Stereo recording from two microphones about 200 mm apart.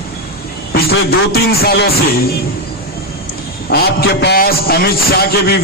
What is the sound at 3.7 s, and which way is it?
A man's voice, 55° left (ahead or behind).